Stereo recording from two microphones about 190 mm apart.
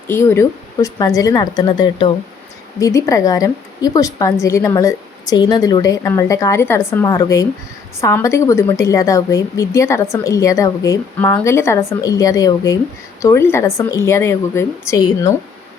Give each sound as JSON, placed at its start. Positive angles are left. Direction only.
{"t": 0.1, "sound": "a woman's voice", "side_deg": 10}